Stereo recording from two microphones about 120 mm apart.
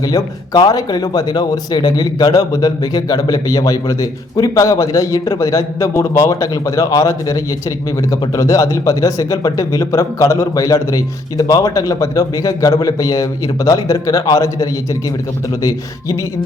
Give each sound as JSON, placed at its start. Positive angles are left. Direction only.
{"t": 0.1, "sound": "speech", "side_deg": 30}